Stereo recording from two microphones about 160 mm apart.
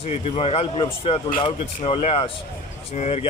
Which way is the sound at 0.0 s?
40° left (ahead or behind).